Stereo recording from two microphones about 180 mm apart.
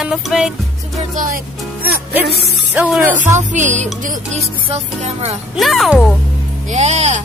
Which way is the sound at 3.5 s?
40° right (ahead or behind).